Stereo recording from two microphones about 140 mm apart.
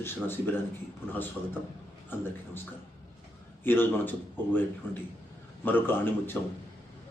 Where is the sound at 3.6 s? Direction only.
15° left (ahead or behind).